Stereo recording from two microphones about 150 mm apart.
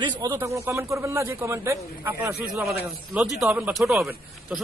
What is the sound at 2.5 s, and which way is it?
A man's voice, centre (ahead or behind).